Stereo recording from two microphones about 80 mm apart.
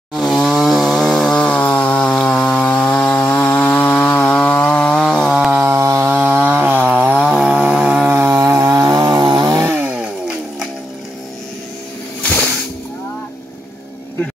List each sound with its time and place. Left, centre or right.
0.1 s chainsaw: centre
5.6 s chainsaw: right
6.2 s chainsaw: centre
8.1 s chainsaw: right
8.4 s chainsaw: right
9.8 s chainsaw: centre
12.2 s music: left